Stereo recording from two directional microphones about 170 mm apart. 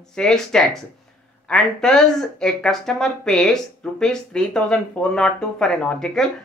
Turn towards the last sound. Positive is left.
turn(degrees=5)  # may be behind; listen again after turning